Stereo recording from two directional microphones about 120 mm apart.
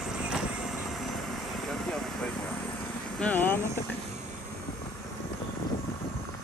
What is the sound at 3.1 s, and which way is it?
Vehicle, 15° left (ahead or behind).